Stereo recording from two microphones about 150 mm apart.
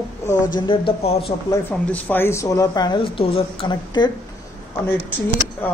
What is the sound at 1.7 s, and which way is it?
Speech, 10° left (ahead or behind).